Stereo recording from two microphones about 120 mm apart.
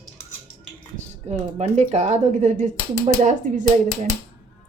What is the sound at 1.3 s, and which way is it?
Speech, 60° right (ahead or behind).